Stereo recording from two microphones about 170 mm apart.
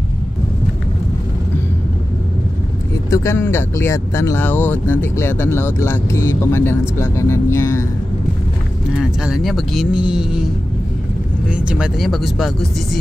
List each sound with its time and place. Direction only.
3.1 s speech: 15° left (ahead or behind)
8.9 s speech: 5° right (ahead or behind)